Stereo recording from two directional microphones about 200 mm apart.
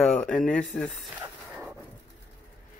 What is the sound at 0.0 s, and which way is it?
Speech, 5° left (ahead or behind).